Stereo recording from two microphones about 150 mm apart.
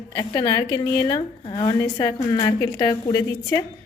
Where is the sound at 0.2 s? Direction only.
30° left (ahead or behind).